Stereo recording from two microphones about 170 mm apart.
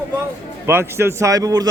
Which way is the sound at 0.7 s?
15° right (ahead or behind).